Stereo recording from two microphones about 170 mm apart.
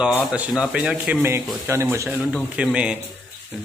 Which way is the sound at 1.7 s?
15° right (ahead or behind).